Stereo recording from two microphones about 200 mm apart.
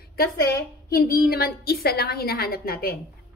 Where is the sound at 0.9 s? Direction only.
50° left (ahead or behind).